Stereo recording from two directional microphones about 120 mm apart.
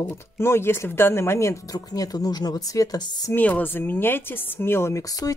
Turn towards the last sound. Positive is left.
turn(degrees=25)  # may be behind; listen again after turning